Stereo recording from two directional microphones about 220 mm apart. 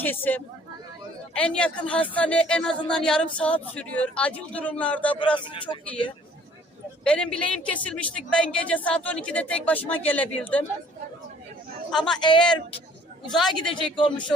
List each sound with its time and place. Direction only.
0.0 s a woman's voice: 10° left (ahead or behind)
5.4 s speech: 20° left (ahead or behind)
7.0 s a woman's voice: 5° left (ahead or behind)
11.9 s a woman's voice: centre (ahead or behind)
13.3 s a woman's voice: centre (ahead or behind)
13.9 s speech: 20° left (ahead or behind)